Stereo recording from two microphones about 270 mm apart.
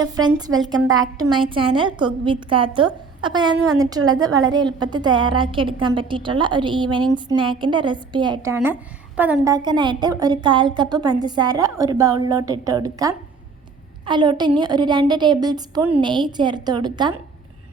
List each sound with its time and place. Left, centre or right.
0.0 s a woman's voice: centre